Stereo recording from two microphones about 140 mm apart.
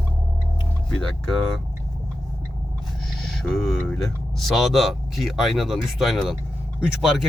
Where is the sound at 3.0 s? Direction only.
Centre (ahead or behind).